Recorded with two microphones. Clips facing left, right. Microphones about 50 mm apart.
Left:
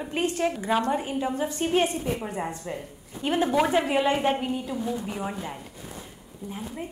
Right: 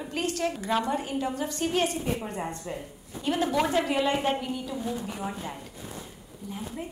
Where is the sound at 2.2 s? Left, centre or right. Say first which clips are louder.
Left 2 dB; centre.